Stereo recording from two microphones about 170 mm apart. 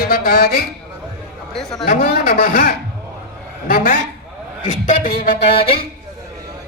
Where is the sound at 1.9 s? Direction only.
55° left (ahead or behind).